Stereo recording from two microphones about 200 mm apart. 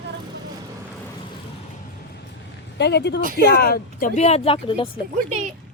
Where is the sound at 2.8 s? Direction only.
55° left (ahead or behind); by 4.9 s 25° left (ahead or behind).